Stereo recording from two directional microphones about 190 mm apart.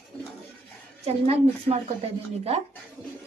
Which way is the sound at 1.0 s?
30° right (ahead or behind).